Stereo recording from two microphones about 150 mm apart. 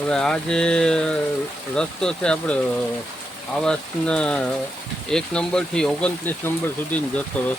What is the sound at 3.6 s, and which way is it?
Speech, 5° left (ahead or behind).